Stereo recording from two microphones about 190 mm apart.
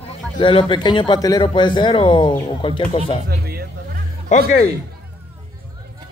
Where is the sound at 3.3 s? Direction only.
55° right (ahead or behind).